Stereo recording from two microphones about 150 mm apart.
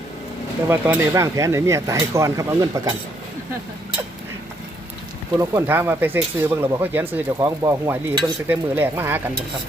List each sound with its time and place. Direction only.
0.7 s speech: 15° right (ahead or behind)
5.4 s speech: 15° right (ahead or behind)